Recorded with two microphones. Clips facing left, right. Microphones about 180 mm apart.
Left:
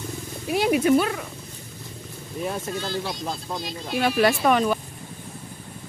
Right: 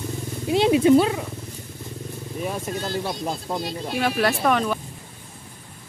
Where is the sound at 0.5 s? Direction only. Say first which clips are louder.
Right 3 dB; 25° right (ahead or behind).